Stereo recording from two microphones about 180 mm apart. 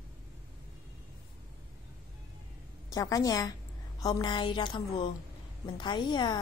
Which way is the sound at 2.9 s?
20° left (ahead or behind).